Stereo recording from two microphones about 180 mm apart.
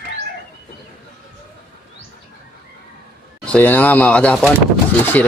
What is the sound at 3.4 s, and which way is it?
Speech, 10° left (ahead or behind).